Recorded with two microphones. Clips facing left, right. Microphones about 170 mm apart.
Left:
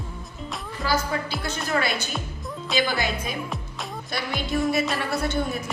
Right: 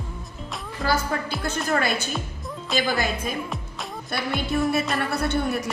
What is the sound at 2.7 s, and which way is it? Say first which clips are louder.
Speech: left 1 dB; centre (ahead or behind).